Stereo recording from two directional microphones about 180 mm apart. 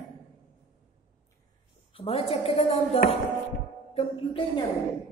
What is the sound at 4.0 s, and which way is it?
Music, 30° left (ahead or behind).